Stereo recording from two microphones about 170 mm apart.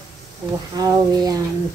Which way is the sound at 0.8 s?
20° right (ahead or behind).